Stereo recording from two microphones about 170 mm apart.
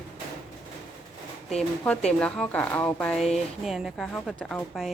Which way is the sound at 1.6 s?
5° left (ahead or behind).